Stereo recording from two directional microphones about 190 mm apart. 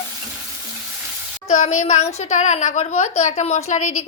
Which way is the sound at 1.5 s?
40° left (ahead or behind).